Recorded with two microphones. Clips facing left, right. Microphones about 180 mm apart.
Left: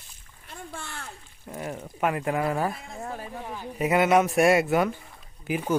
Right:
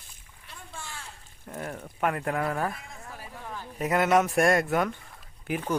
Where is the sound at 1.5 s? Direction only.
10° left (ahead or behind).